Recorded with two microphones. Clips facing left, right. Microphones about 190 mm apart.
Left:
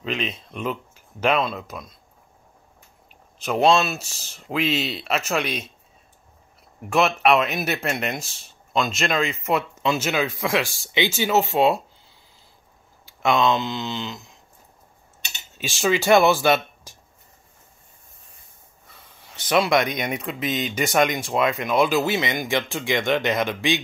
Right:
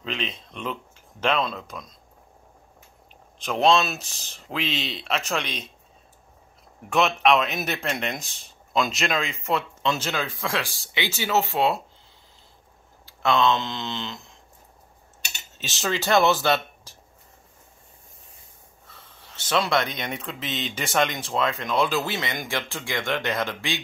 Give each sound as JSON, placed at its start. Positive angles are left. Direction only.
{"t": 0.0, "sound": "speech", "side_deg": 5}
{"t": 3.3, "sound": "speech", "side_deg": 5}
{"t": 6.9, "sound": "speech", "side_deg": 5}
{"t": 13.0, "sound": "speech", "side_deg": 15}
{"t": 15.5, "sound": "speech", "side_deg": 10}
{"t": 18.9, "sound": "speech", "side_deg": 15}